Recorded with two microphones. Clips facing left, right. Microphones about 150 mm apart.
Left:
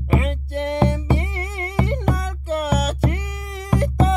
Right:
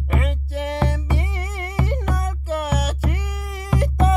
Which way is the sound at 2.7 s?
60° left (ahead or behind).